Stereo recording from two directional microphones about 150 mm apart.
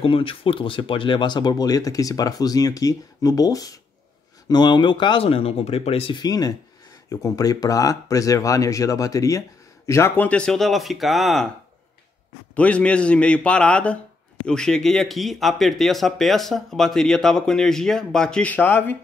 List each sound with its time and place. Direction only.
0.0 s speech: 35° left (ahead or behind); by 11.4 s centre (ahead or behind)
12.5 s a man's voice: 10° left (ahead or behind)